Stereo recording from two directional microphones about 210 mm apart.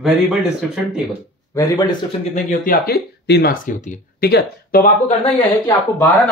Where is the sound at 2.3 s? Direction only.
40° left (ahead or behind).